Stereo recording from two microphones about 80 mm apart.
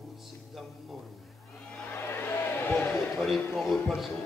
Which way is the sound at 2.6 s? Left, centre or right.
Left.